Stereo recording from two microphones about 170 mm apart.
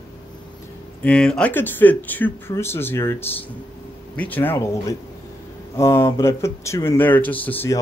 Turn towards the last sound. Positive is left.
turn(degrees=10)  # may be behind; listen again after turning